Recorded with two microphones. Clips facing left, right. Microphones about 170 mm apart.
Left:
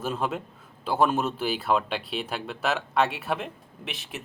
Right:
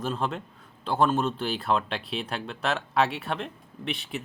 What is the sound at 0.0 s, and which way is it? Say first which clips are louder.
Speech: left 1 dB; 5° left (ahead or behind).